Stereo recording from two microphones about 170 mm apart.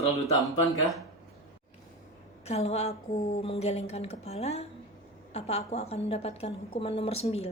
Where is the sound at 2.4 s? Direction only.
40° left (ahead or behind).